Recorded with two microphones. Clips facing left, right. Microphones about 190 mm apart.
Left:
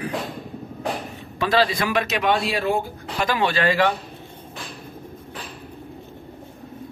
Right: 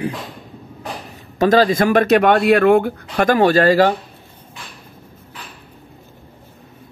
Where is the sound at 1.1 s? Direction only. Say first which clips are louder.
Right 8 dB; 45° right (ahead or behind).